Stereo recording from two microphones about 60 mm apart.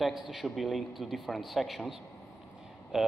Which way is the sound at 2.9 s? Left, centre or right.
Centre.